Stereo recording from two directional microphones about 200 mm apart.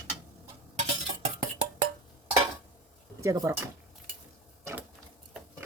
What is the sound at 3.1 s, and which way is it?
Speech, 15° right (ahead or behind).